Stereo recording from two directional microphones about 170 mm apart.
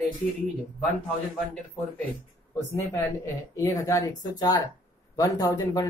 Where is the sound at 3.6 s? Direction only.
15° left (ahead or behind).